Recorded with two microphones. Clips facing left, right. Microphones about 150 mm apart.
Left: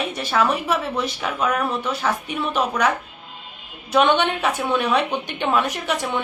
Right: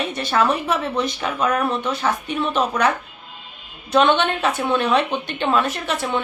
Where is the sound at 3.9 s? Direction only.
10° left (ahead or behind).